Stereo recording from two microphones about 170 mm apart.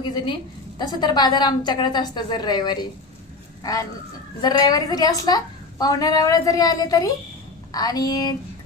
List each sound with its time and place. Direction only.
0.0 s a woman's voice: 25° left (ahead or behind)
4.4 s a woman's voice: 25° left (ahead or behind)